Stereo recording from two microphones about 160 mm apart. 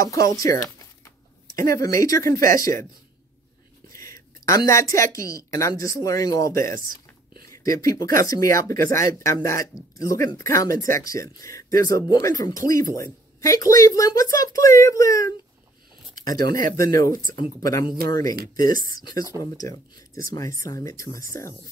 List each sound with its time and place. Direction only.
0.0 s speech: 20° left (ahead or behind)
3.9 s a woman's voice: 20° left (ahead or behind)
7.8 s speech: 20° left (ahead or behind)
16.3 s speech: 65° right (ahead or behind)
16.7 s speech: 20° left (ahead or behind)